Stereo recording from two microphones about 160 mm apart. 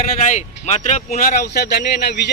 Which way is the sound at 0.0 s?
50° left (ahead or behind).